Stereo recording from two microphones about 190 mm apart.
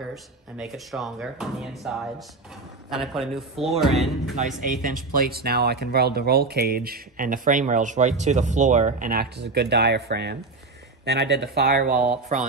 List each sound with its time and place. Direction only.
0.1 s speech: centre (ahead or behind)
4.5 s speech: 45° right (ahead or behind)